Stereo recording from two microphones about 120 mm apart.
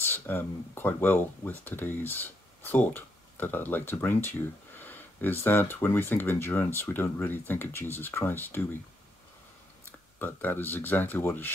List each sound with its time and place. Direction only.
0.0 s speech: 15° left (ahead or behind)
10.1 s speech: 15° left (ahead or behind)